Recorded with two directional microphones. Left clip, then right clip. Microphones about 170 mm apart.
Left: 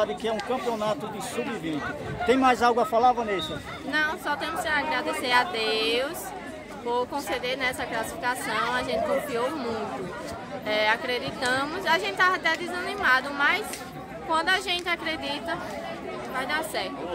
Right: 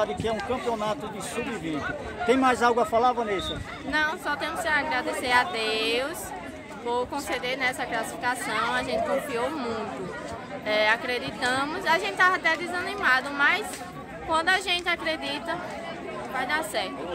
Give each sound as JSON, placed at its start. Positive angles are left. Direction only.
{"t": 0.0, "sound": "a man's voice", "side_deg": 5}
{"t": 2.2, "sound": "a man's voice", "side_deg": 5}
{"t": 3.9, "sound": "a woman's voice", "side_deg": -15}